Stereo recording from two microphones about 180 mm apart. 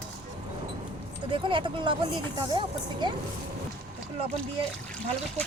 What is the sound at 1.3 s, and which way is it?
Speech, 30° right (ahead or behind).